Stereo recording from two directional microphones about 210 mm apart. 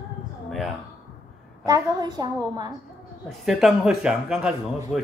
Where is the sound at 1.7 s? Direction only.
20° right (ahead or behind).